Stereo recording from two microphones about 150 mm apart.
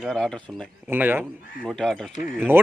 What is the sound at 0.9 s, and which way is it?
Speech, 15° right (ahead or behind).